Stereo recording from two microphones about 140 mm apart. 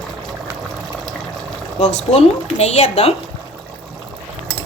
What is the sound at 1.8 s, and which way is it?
A woman's voice, 55° left (ahead or behind).